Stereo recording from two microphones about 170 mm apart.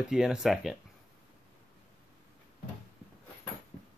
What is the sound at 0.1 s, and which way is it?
Speech, 5° right (ahead or behind).